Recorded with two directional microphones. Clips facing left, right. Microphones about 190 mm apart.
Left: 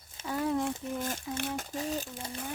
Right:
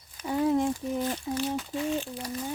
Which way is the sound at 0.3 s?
20° right (ahead or behind).